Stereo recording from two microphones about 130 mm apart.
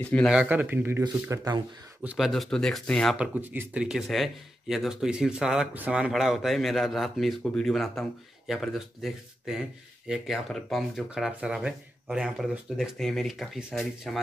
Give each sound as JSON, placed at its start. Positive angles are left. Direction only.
{"t": 0.0, "sound": "speech", "side_deg": 10}
{"t": 0.3, "sound": "speech", "side_deg": -10}
{"t": 2.0, "sound": "speech", "side_deg": 0}
{"t": 3.2, "sound": "speech", "side_deg": -10}